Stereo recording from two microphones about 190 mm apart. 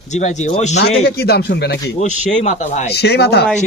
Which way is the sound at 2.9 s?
60° left (ahead or behind).